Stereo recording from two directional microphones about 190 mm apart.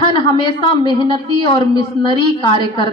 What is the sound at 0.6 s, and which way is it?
A woman's voice, 25° left (ahead or behind).